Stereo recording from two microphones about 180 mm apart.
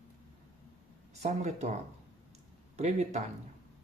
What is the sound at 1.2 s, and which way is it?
Speech, 40° right (ahead or behind).